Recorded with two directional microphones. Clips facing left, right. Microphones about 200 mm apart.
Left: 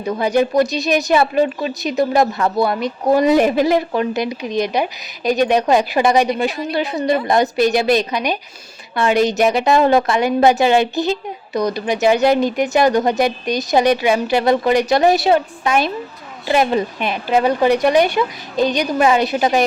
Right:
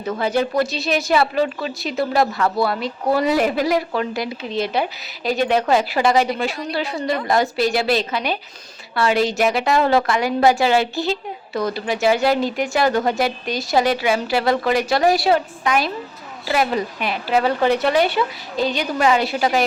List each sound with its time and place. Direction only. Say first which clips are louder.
0.0 s a woman's voice: left 4 dB; 15° left (ahead or behind)